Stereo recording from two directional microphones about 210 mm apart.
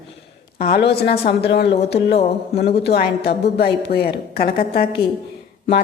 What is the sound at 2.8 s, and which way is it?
A woman's voice, 50° left (ahead or behind).